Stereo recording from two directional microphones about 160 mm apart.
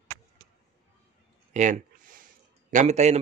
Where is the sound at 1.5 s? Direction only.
50° right (ahead or behind).